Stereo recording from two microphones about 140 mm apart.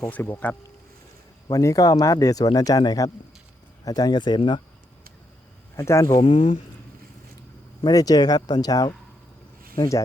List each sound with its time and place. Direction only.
0.0 s speech: 15° left (ahead or behind)
1.5 s speech: 25° left (ahead or behind)
5.7 s speech: 20° left (ahead or behind)
6.1 s speech: 50° left (ahead or behind)
7.9 s speech: 25° left (ahead or behind)